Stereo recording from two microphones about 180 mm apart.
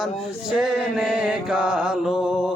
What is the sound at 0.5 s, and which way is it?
Music, 5° right (ahead or behind).